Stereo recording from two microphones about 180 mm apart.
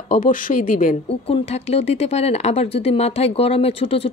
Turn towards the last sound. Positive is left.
turn(degrees=30)  # may be behind; listen again after turning